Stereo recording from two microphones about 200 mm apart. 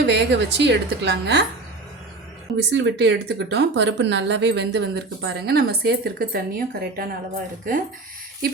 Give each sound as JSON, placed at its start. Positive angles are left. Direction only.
{"t": 0.1, "sound": "speech", "side_deg": -60}
{"t": 2.6, "sound": "speech", "side_deg": -60}